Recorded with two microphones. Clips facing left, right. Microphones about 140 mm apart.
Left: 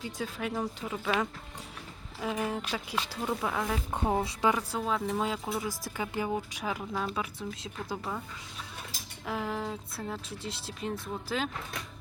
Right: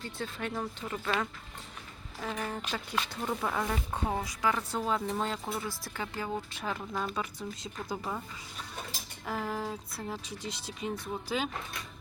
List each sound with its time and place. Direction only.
0.0 s speech: 10° left (ahead or behind)
3.9 s speech: 20° left (ahead or behind)
4.8 s speech: centre (ahead or behind)
9.2 s speech: centre (ahead or behind)